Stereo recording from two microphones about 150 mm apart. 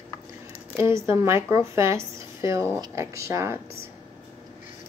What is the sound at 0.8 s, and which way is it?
Speech, 15° right (ahead or behind).